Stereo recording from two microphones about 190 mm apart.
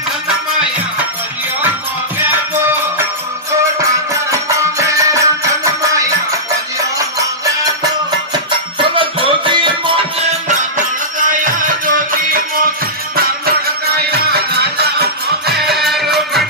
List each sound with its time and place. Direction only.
4.1 s music: 15° right (ahead or behind)
8.7 s music: 25° right (ahead or behind)
11.1 s music: 45° right (ahead or behind)
13.9 s music: 60° right (ahead or behind)
15.7 s music: centre (ahead or behind)